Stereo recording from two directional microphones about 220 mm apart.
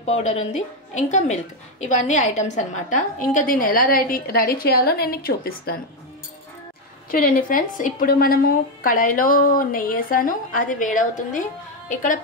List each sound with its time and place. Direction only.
0.0 s a woman's voice: 30° left (ahead or behind)
7.1 s a woman's voice: 40° left (ahead or behind)